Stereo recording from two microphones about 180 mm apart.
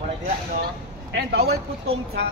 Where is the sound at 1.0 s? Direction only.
65° right (ahead or behind).